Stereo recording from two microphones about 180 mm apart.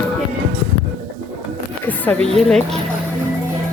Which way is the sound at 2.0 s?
5° left (ahead or behind).